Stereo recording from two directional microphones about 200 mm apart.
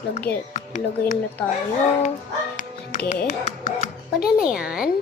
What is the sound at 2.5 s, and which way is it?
Music, 40° left (ahead or behind).